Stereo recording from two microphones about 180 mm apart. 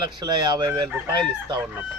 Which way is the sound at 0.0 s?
25° right (ahead or behind).